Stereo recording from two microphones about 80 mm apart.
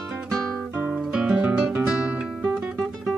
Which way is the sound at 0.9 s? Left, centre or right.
Centre.